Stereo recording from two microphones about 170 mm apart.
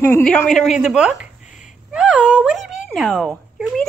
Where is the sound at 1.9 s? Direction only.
5° right (ahead or behind).